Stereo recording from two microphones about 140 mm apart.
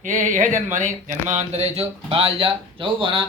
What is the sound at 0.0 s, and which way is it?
Speech, 65° right (ahead or behind).